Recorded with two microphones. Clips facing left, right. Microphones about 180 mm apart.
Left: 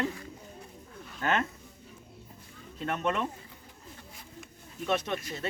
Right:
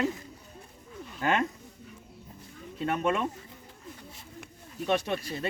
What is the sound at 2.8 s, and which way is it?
Speech, 10° right (ahead or behind).